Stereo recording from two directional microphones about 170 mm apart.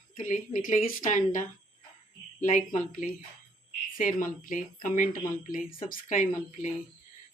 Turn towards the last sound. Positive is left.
turn(degrees=50)  # may be behind; listen again after turning